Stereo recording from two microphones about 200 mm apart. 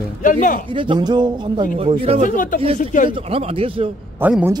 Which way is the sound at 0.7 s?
25° right (ahead or behind).